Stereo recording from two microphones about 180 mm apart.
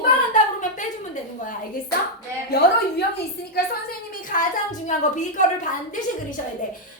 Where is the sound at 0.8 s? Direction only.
45° left (ahead or behind).